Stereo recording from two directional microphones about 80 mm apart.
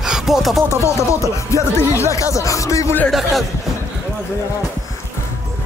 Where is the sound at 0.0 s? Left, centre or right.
Centre.